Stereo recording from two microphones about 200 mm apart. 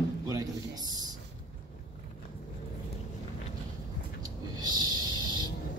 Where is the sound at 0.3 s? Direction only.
15° right (ahead or behind).